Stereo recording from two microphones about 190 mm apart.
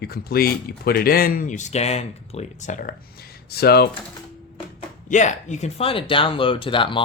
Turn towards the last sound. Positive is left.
turn(degrees=25)  # may be behind; listen again after turning